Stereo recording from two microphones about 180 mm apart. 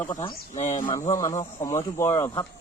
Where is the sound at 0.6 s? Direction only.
40° left (ahead or behind).